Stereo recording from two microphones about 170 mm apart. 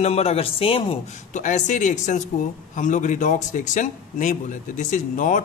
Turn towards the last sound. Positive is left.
turn(degrees=50)  # may be behind; listen again after turning